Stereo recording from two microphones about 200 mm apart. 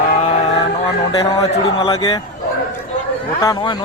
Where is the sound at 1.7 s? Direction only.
25° left (ahead or behind).